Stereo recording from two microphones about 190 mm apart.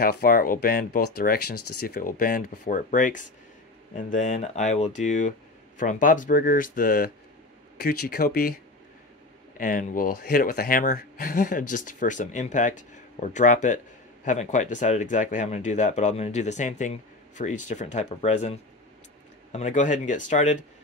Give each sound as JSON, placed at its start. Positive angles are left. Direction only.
{"t": 0.0, "sound": "speech", "side_deg": 50}
{"t": 9.6, "sound": "speech", "side_deg": 45}